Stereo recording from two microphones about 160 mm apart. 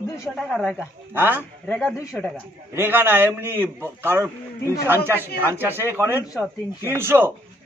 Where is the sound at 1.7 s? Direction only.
5° left (ahead or behind).